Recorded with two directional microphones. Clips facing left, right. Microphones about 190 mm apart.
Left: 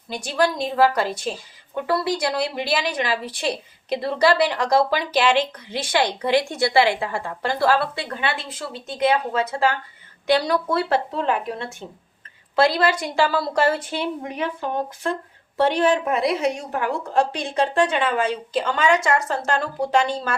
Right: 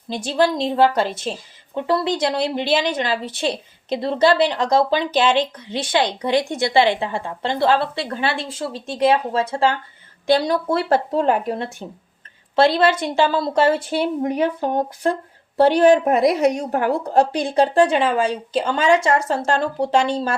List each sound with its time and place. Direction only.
0.1 s a woman's voice: 25° right (ahead or behind)
10.8 s speech: 45° right (ahead or behind)
12.5 s a woman's voice: 25° right (ahead or behind)
13.9 s a woman's voice: 40° right (ahead or behind)